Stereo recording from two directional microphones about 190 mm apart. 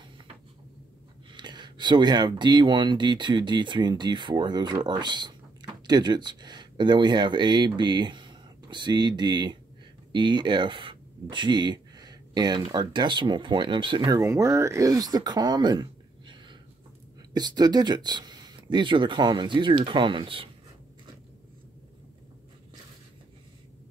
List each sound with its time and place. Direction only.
1.3 s speech: 25° right (ahead or behind)